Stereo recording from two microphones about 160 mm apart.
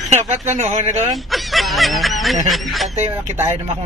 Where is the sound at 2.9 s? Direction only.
45° right (ahead or behind).